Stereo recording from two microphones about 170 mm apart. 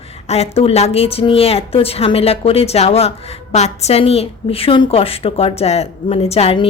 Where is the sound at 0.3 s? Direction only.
35° left (ahead or behind).